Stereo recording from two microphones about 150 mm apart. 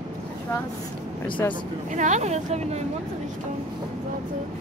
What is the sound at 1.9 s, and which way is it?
Speech, 55° right (ahead or behind).